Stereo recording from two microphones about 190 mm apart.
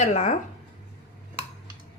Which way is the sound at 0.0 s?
40° left (ahead or behind).